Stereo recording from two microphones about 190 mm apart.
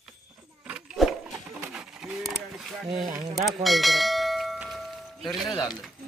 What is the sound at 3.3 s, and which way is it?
Bell, centre (ahead or behind).